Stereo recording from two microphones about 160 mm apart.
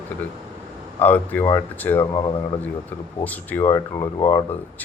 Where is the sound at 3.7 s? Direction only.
25° left (ahead or behind).